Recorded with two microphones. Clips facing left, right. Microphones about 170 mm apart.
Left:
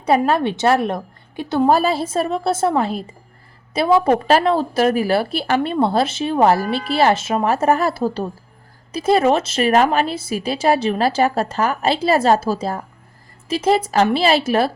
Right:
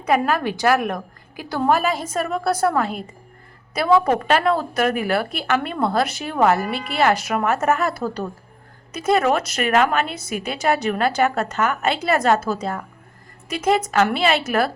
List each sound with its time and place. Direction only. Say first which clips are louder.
0.0 s a woman's voice: left 3 dB; 30° left (ahead or behind)